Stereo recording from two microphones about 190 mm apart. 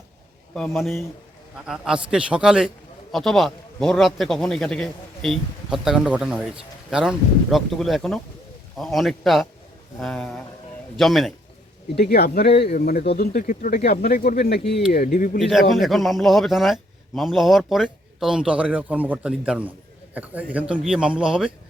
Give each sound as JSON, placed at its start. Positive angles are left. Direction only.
{"t": 0.5, "sound": "a man's voice", "side_deg": 0}
{"t": 11.9, "sound": "speech", "side_deg": 55}
{"t": 15.4, "sound": "a man's voice", "side_deg": 0}